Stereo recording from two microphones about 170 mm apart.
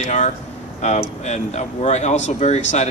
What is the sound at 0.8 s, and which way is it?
Speech, 40° left (ahead or behind).